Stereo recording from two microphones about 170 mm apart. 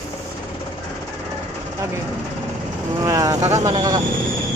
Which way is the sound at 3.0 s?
20° right (ahead or behind).